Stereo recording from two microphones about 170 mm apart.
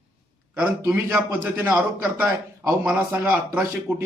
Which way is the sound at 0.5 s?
5° right (ahead or behind).